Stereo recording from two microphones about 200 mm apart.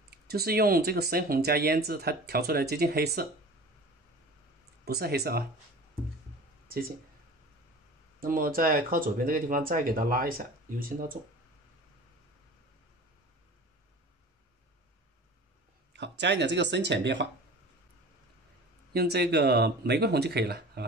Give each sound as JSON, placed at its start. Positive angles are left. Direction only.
{"t": 0.3, "sound": "speech", "side_deg": -50}
{"t": 4.8, "sound": "speech", "side_deg": -50}
{"t": 8.2, "sound": "speech", "side_deg": -45}
{"t": 16.0, "sound": "speech", "side_deg": -60}
{"t": 18.9, "sound": "speech", "side_deg": -55}